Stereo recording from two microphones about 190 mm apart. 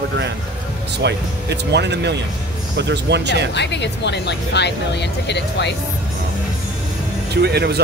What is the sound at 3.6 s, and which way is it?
Speech, 65° left (ahead or behind).